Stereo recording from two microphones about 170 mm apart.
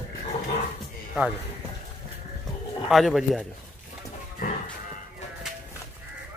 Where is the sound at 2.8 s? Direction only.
Centre (ahead or behind).